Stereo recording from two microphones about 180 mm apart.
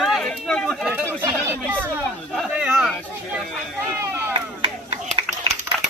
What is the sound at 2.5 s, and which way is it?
Speech, 5° right (ahead or behind).